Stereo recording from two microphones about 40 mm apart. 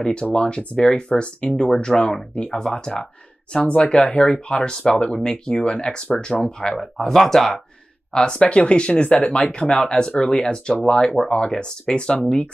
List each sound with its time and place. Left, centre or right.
0.0 s speech: left
1.5 s speech: centre; by 6.4 s left
7.0 s speech: centre
8.1 s speech: left